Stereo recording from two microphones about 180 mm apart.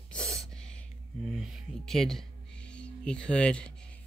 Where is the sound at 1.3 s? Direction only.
Centre (ahead or behind).